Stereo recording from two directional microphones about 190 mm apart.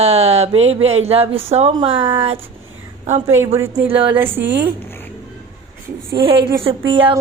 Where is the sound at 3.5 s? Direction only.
10° right (ahead or behind).